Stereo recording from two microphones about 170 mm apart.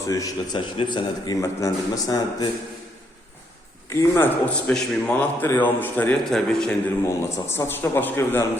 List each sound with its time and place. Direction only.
0.1 s a man's voice: 20° left (ahead or behind)
3.8 s a man's voice: 15° left (ahead or behind)
7.0 s a man's voice: 15° left (ahead or behind)